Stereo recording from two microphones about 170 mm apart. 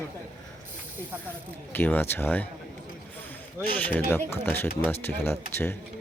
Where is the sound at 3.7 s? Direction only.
10° left (ahead or behind).